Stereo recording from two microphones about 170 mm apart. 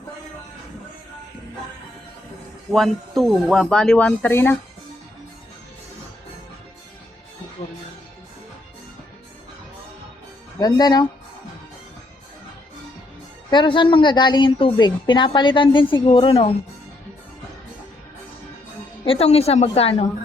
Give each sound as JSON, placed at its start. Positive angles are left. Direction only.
{"t": 2.7, "sound": "speech", "side_deg": 0}
{"t": 10.6, "sound": "a woman's voice", "side_deg": 25}
{"t": 13.5, "sound": "a woman's voice", "side_deg": 30}
{"t": 19.0, "sound": "a woman's voice", "side_deg": 35}